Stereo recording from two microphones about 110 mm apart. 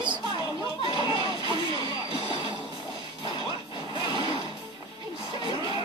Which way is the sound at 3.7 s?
45° left (ahead or behind).